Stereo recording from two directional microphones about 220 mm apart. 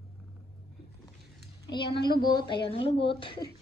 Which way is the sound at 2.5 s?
25° left (ahead or behind).